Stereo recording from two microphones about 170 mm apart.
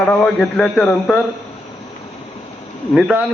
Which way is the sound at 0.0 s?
10° left (ahead or behind).